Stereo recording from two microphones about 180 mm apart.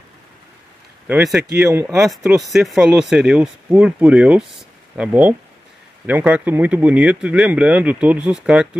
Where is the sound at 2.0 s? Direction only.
Centre (ahead or behind).